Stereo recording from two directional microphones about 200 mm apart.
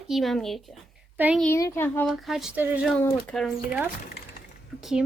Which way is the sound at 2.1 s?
Centre (ahead or behind).